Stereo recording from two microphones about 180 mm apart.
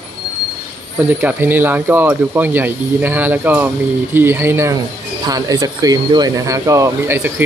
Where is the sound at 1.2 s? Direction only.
10° right (ahead or behind).